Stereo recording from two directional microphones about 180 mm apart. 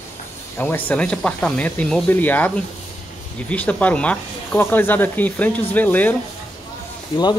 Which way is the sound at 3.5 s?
10° left (ahead or behind).